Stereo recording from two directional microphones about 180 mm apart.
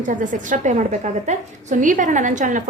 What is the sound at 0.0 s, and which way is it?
A woman's voice, 45° right (ahead or behind).